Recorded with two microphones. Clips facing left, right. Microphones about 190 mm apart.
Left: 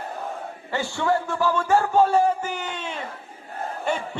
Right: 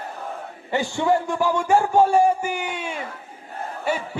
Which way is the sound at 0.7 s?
15° right (ahead or behind).